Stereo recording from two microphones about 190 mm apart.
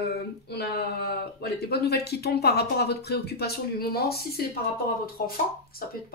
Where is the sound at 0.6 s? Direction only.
55° left (ahead or behind).